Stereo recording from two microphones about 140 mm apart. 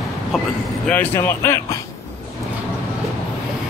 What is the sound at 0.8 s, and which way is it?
Speech, 15° left (ahead or behind).